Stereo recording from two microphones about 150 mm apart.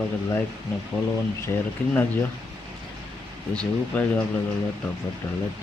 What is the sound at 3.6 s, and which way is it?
Speech, 10° left (ahead or behind).